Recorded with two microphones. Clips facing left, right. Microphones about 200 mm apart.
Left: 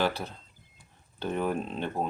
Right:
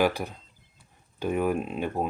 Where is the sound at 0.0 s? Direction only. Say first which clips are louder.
Right 4 dB; 15° right (ahead or behind).